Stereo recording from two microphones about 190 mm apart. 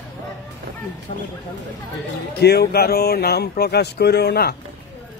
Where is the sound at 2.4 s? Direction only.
55° left (ahead or behind).